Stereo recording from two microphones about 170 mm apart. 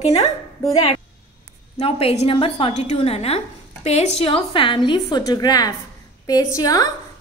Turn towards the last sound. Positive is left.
turn(degrees=20)  # may be behind; listen again after turning